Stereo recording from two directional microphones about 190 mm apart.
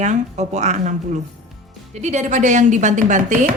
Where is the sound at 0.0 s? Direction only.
40° right (ahead or behind).